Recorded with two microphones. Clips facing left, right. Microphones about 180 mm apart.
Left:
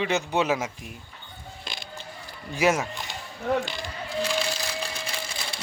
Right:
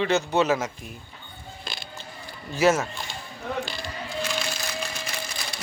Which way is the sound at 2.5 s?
15° left (ahead or behind).